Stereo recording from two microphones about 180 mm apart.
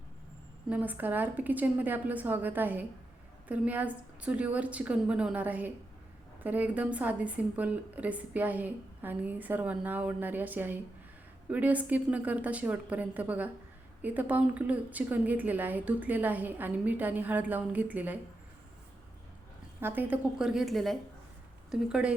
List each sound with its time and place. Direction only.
0.7 s a woman's voice: 10° right (ahead or behind)
19.8 s a woman's voice: 10° right (ahead or behind)